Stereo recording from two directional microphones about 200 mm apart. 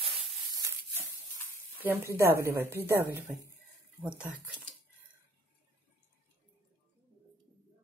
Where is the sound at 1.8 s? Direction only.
10° right (ahead or behind).